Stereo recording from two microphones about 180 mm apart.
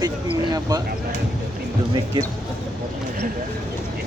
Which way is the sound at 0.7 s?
20° right (ahead or behind).